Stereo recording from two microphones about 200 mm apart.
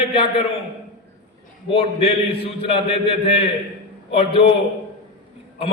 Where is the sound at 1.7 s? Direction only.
30° left (ahead or behind).